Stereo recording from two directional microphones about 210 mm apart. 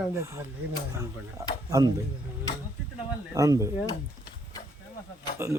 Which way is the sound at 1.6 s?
15° right (ahead or behind).